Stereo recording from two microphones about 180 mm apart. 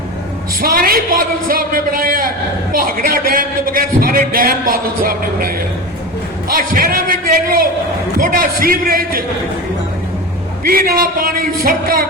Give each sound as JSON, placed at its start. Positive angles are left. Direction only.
{"t": 0.6, "sound": "a man's voice", "side_deg": -55}
{"t": 10.6, "sound": "a man's voice", "side_deg": -55}